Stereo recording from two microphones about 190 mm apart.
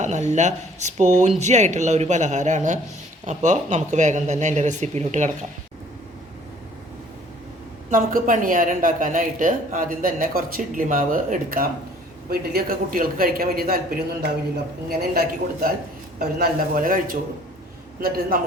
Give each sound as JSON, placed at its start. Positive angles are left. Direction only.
{"t": 0.0, "sound": "speech", "side_deg": -40}
{"t": 7.9, "sound": "speech", "side_deg": -45}